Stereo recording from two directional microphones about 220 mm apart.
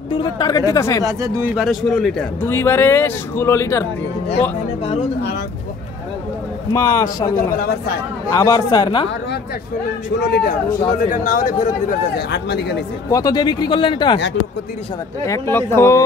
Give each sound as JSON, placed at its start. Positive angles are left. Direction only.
{"t": 0.1, "sound": "a man's voice", "side_deg": 20}
{"t": 1.0, "sound": "speech", "side_deg": -15}
{"t": 1.5, "sound": "a man's voice", "side_deg": 0}
{"t": 6.7, "sound": "a man's voice", "side_deg": 15}
{"t": 7.3, "sound": "speech", "side_deg": 40}
{"t": 8.3, "sound": "a man's voice", "side_deg": 15}
{"t": 10.2, "sound": "speech", "side_deg": 45}
{"t": 12.3, "sound": "speech", "side_deg": 50}
{"t": 13.1, "sound": "speech", "side_deg": 15}
{"t": 15.2, "sound": "a man's voice", "side_deg": 10}